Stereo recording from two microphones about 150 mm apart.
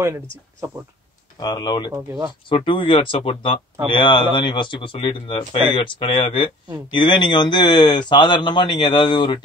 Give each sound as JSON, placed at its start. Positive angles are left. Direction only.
{"t": 0.0, "sound": "speech", "side_deg": -15}
{"t": 1.4, "sound": "speech", "side_deg": 30}
{"t": 2.0, "sound": "speech", "side_deg": -20}
{"t": 2.5, "sound": "speech", "side_deg": 35}